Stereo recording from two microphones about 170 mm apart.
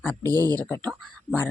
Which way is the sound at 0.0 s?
10° left (ahead or behind).